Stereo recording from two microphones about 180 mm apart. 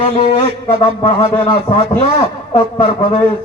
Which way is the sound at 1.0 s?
30° left (ahead or behind).